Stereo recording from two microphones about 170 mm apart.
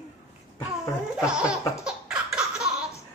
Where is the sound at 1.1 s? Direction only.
5° right (ahead or behind).